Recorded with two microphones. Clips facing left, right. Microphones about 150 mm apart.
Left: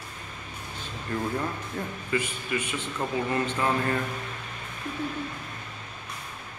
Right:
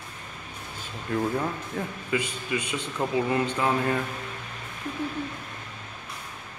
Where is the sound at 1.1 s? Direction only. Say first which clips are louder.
Right 3 dB; 5° right (ahead or behind).